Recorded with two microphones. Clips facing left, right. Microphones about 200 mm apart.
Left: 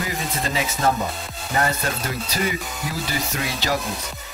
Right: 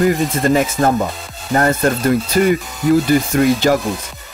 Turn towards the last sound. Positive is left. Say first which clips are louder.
# right 12 dB
turn(degrees=-50)  # may be behind; listen again after turning